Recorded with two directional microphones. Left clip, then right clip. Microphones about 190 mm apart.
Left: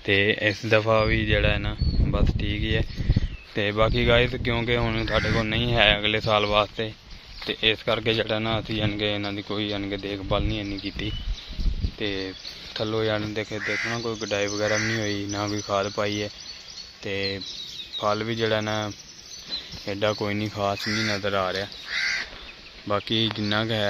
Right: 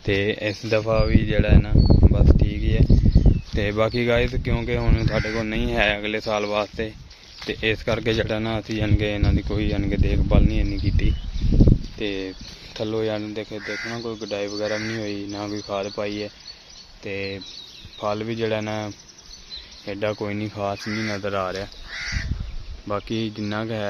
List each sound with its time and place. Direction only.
0.0 s speech: 15° right (ahead or behind)
3.5 s speech: 20° right (ahead or behind)
22.8 s speech: 5° right (ahead or behind)